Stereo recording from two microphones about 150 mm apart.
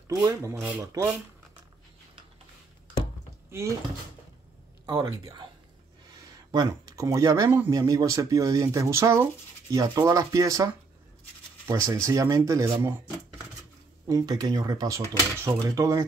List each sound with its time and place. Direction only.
0.1 s speech: 20° right (ahead or behind)
3.4 s speech: 20° right (ahead or behind)
5.0 s speech: 25° right (ahead or behind)
6.5 s speech: 25° right (ahead or behind)
14.0 s speech: 25° right (ahead or behind)